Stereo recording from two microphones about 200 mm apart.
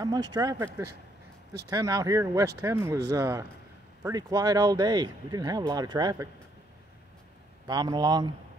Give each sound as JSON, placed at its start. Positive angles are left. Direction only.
{"t": 0.0, "sound": "speech", "side_deg": -20}
{"t": 7.6, "sound": "speech", "side_deg": -20}